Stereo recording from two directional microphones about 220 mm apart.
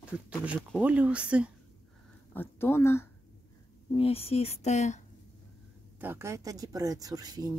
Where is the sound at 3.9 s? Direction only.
25° left (ahead or behind).